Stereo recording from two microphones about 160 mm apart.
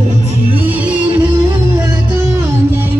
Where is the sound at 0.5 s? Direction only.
10° right (ahead or behind).